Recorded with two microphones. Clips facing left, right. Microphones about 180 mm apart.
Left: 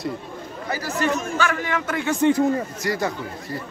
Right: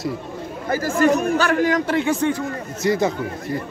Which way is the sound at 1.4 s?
40° right (ahead or behind).